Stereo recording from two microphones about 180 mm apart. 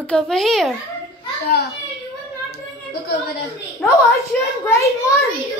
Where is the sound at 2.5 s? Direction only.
60° left (ahead or behind).